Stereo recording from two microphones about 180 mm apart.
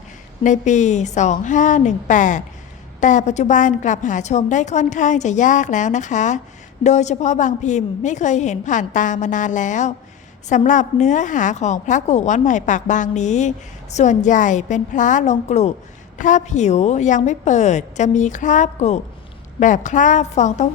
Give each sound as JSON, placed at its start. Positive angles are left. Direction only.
{"t": 0.4, "sound": "a woman's voice", "side_deg": 40}